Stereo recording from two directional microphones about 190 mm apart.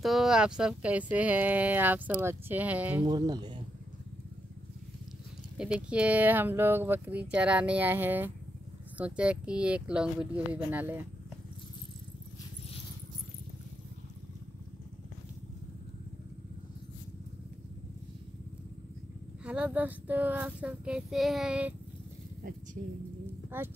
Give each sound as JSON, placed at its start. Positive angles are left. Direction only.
{"t": 0.0, "sound": "speech", "side_deg": 0}
{"t": 3.1, "sound": "speech", "side_deg": -20}
{"t": 5.6, "sound": "speech", "side_deg": -5}
{"t": 19.4, "sound": "speech", "side_deg": -5}
{"t": 23.5, "sound": "speech", "side_deg": -10}